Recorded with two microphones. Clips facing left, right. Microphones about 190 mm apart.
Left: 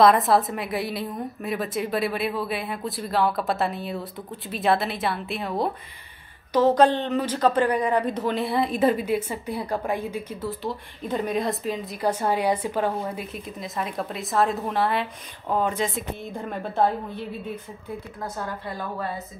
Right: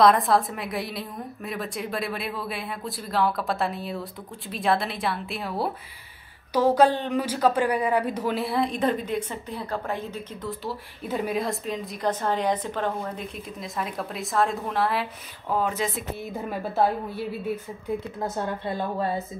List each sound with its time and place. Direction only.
0.0 s a woman's voice: centre (ahead or behind)
10.6 s speech: 5° right (ahead or behind)
18.2 s speech: 25° right (ahead or behind)